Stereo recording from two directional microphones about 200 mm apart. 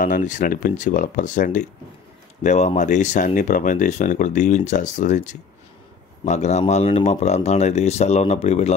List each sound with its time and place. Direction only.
0.0 s speech: 40° left (ahead or behind)